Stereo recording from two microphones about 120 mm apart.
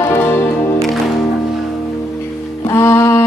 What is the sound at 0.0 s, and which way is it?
Music, 20° left (ahead or behind).